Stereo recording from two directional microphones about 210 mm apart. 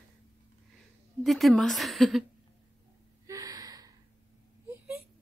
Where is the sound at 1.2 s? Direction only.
Centre (ahead or behind).